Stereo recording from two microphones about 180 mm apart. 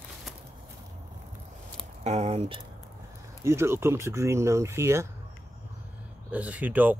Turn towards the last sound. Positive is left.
turn(degrees=-10)  # may be behind; listen again after turning